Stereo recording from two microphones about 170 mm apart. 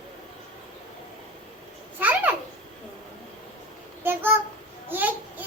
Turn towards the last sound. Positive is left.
turn(degrees=-10)  # may be behind; listen again after turning